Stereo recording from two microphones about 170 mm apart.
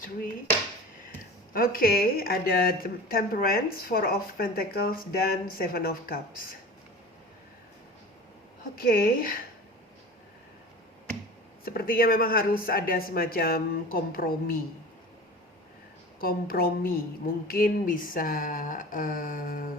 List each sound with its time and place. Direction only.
1.5 s speech: 60° left (ahead or behind)
8.8 s speech: 60° left (ahead or behind)
11.6 s speech: 60° left (ahead or behind)
16.2 s speech: 60° left (ahead or behind)